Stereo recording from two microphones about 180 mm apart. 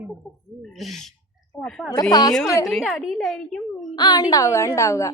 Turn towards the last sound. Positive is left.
turn(degrees=15)  # may be behind; listen again after turning